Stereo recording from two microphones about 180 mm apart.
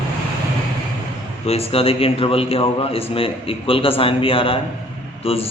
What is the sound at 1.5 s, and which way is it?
A man's voice, 35° left (ahead or behind).